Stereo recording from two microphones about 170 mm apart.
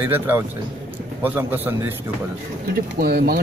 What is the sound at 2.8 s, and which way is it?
Speech, 65° right (ahead or behind).